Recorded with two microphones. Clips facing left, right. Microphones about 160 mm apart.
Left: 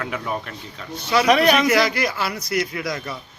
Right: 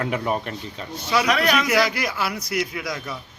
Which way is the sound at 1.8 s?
5° right (ahead or behind).